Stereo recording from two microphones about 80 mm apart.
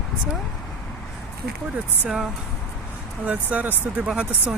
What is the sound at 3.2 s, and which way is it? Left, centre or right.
Speech, centre.